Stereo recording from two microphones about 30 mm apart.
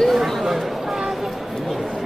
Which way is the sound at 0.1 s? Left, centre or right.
Centre.